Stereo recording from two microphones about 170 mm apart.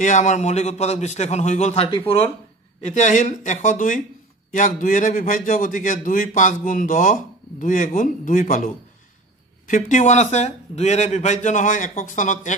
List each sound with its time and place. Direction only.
0.0 s a man's voice: 45° left (ahead or behind)
2.8 s a man's voice: 45° left (ahead or behind)